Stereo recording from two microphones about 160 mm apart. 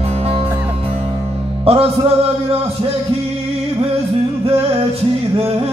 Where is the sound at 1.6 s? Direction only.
35° right (ahead or behind).